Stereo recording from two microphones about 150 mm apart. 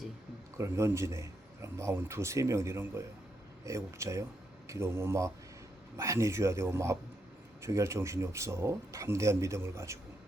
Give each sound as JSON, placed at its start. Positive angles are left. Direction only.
{"t": 0.5, "sound": "a man's voice", "side_deg": -20}